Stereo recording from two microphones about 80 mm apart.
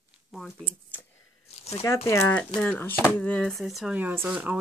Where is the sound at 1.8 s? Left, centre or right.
Left.